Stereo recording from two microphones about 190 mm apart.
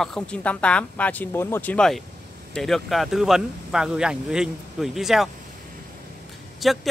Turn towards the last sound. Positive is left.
turn(degrees=0)  # may be behind; listen again after turning